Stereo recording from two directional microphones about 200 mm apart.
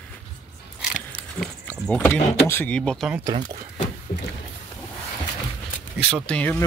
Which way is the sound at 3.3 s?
25° right (ahead or behind).